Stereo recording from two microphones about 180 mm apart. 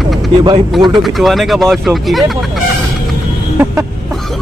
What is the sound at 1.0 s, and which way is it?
Speech, centre (ahead or behind).